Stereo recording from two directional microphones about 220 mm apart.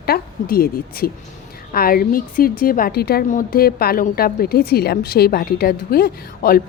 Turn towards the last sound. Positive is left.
turn(degrees=45)  # may be behind; listen again after turning